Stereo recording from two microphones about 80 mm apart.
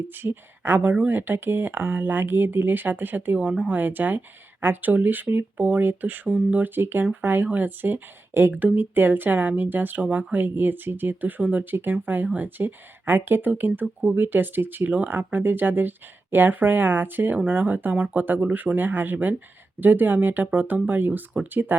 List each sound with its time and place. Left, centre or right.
0.1 s speech: right
13.8 s speech: centre
14.2 s speech: right